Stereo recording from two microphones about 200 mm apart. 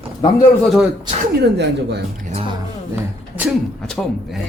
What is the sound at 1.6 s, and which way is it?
Speech, 55° right (ahead or behind).